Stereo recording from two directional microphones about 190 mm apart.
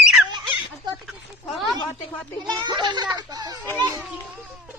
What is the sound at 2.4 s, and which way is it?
Speech, 25° right (ahead or behind).